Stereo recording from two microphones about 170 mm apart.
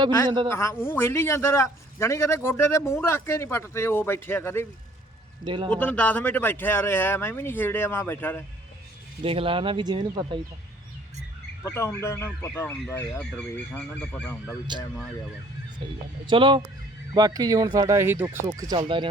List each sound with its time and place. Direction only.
0.4 s a man's voice: 15° left (ahead or behind)
5.5 s speech: 25° right (ahead or behind)
5.7 s a man's voice: 10° left (ahead or behind)
9.2 s speech: 30° right (ahead or behind)
11.6 s a man's voice: 15° left (ahead or behind)
14.7 s speech: 25° right (ahead or behind)